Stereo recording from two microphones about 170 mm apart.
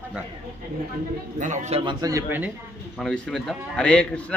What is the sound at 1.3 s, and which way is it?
A man's voice, 45° right (ahead or behind).